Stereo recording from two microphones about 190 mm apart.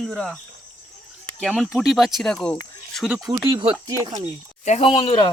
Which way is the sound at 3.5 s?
25° right (ahead or behind).